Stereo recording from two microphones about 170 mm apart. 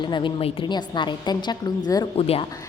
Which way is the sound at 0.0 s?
30° left (ahead or behind).